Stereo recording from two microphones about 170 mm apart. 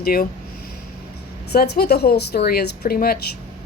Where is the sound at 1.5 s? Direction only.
70° left (ahead or behind).